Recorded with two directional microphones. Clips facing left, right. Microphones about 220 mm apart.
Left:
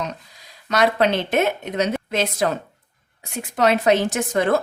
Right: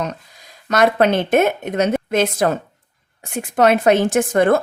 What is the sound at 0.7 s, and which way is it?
A woman's voice, 50° right (ahead or behind).